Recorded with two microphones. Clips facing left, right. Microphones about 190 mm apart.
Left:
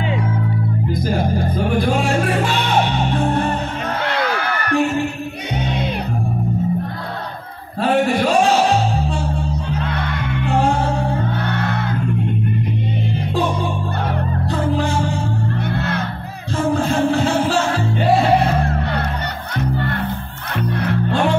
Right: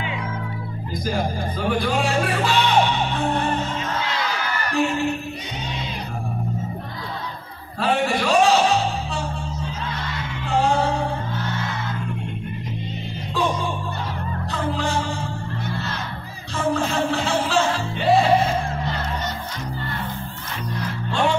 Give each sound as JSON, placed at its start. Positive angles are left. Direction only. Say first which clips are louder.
{"t": 4.0, "sound": "a sound", "louder": "left 6 dB", "side_deg": 60}
{"t": 9.7, "sound": "music", "louder": "left 7 dB", "side_deg": 60}
{"t": 17.1, "sound": "music", "louder": "left 6 dB", "side_deg": 50}
{"t": 18.4, "sound": "music", "louder": "left 4 dB", "side_deg": 65}
{"t": 20.8, "sound": "music", "louder": "left 10 dB", "side_deg": 65}